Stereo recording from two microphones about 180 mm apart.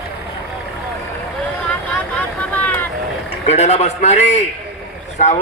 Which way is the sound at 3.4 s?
35° left (ahead or behind).